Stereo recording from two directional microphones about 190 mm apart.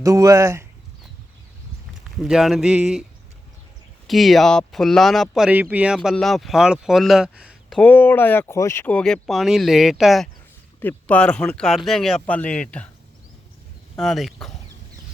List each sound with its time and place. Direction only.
0.0 s speech: 15° right (ahead or behind)
2.2 s speech: centre (ahead or behind)
7.8 s speech: 10° left (ahead or behind)
13.9 s speech: centre (ahead or behind)